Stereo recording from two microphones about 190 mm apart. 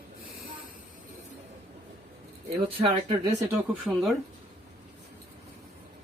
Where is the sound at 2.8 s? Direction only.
25° right (ahead or behind).